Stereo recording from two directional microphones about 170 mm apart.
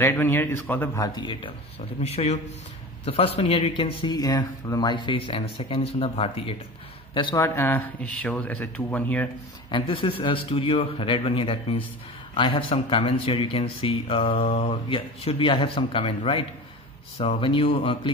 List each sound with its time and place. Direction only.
0.0 s speech: 15° left (ahead or behind)
2.0 s speech: 40° left (ahead or behind)
3.3 s speech: 35° left (ahead or behind)
4.0 s speech: 25° left (ahead or behind)
7.3 s speech: 15° left (ahead or behind)
9.7 s speech: 30° left (ahead or behind)